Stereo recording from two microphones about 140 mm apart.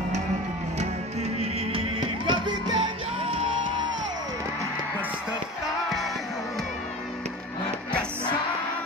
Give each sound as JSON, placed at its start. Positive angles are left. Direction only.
{"t": 1.4, "sound": "music", "side_deg": -40}